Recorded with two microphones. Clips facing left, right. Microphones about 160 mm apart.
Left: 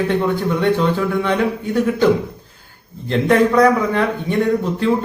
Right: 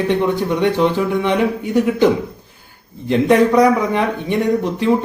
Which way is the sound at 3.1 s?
15° right (ahead or behind).